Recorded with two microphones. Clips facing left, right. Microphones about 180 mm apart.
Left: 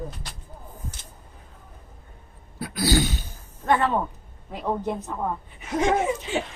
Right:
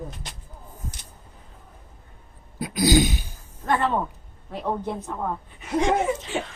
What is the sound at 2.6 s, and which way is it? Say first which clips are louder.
Throat clearing: right 3 dB; 15° right (ahead or behind).